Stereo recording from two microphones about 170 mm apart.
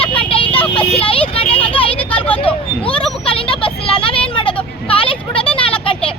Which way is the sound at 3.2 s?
30° left (ahead or behind).